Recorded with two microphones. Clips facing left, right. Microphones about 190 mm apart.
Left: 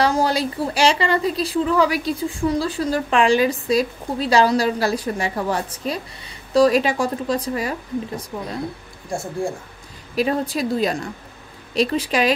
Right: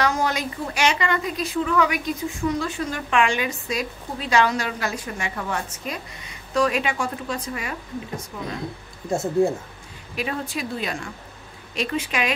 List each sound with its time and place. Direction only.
0.0 s speech: 30° left (ahead or behind)
9.1 s speech: 20° right (ahead or behind)
10.1 s speech: 35° left (ahead or behind)